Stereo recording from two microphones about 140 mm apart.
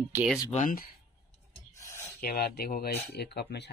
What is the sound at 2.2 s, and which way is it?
Speech, 90° left.